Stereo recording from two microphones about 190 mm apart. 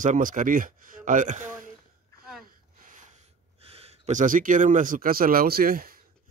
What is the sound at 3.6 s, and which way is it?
Speech, 30° right (ahead or behind).